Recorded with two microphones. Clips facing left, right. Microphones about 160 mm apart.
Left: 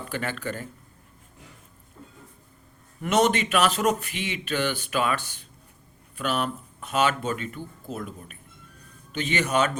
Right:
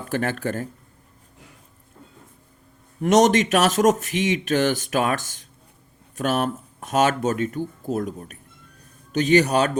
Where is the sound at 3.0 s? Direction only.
40° right (ahead or behind).